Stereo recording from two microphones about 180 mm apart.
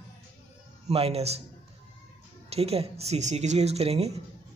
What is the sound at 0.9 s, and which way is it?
Speech, 35° right (ahead or behind).